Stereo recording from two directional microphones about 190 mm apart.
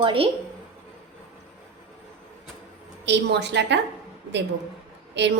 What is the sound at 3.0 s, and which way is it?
Speech, 65° right (ahead or behind).